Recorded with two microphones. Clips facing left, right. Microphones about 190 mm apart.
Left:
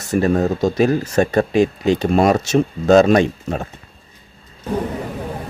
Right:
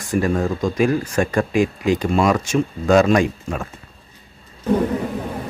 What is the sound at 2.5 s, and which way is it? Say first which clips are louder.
A man's voice: left 4 dB; 25° left (ahead or behind).